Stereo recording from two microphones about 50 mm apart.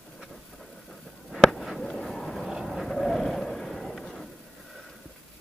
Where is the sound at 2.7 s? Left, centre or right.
Centre.